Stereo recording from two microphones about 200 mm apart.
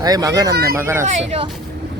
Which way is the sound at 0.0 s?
20° right (ahead or behind).